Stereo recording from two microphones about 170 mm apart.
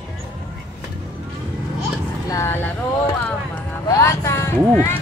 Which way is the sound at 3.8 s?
20° left (ahead or behind).